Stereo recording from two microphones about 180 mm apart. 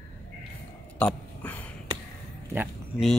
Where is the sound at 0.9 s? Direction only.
10° left (ahead or behind).